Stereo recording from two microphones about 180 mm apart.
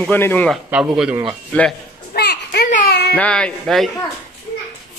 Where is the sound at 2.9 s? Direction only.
65° left (ahead or behind).